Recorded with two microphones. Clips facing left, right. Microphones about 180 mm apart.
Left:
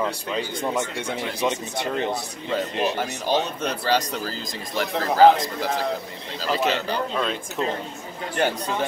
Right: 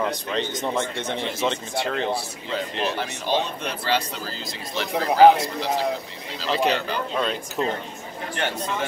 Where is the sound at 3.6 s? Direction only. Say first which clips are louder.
Left 2 dB; 40° left (ahead or behind).